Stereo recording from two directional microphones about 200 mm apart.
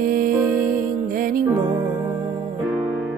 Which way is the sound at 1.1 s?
45° right (ahead or behind).